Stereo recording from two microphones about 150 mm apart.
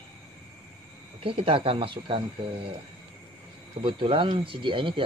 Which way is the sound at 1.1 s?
35° right (ahead or behind).